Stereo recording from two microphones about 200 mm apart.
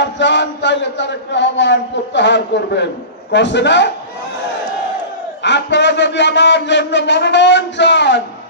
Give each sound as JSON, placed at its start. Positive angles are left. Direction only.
{"t": 0.0, "sound": "chant", "side_deg": 60}
{"t": 5.4, "sound": "chant", "side_deg": 60}